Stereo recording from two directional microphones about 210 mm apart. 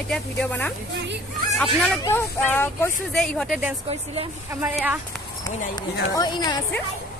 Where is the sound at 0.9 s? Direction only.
55° right (ahead or behind).